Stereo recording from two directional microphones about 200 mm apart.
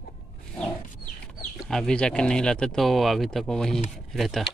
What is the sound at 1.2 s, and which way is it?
Speech, centre (ahead or behind).